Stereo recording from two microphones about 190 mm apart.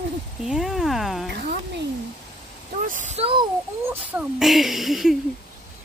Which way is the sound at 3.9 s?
10° right (ahead or behind).